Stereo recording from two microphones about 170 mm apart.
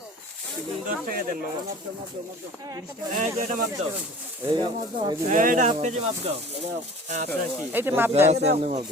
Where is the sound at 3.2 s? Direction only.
50° right (ahead or behind).